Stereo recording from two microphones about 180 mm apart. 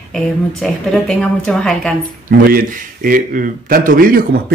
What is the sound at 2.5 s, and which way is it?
A man's voice, 50° right (ahead or behind).